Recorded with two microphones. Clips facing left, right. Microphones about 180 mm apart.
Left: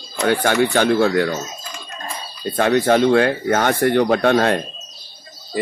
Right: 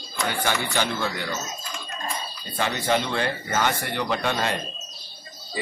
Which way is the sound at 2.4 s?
60° left (ahead or behind).